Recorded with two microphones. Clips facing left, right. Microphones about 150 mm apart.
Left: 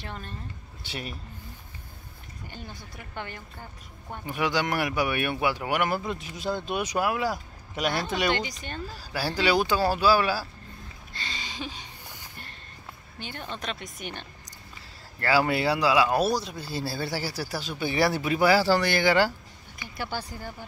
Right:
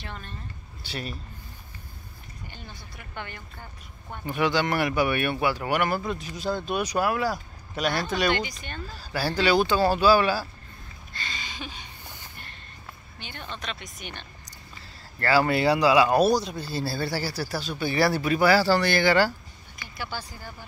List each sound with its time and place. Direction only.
0.0 s speech: 40° left (ahead or behind)
0.8 s speech: 20° left (ahead or behind)
2.5 s speech: 45° left (ahead or behind)
4.1 s speech: 10° left (ahead or behind); by 8.5 s 30° left (ahead or behind)
8.9 s speech: 10° left (ahead or behind)
11.1 s a sound: 30° left (ahead or behind)
13.2 s speech: 40° left (ahead or behind)
15.1 s speech: 10° left (ahead or behind)
20.0 s speech: 55° left (ahead or behind)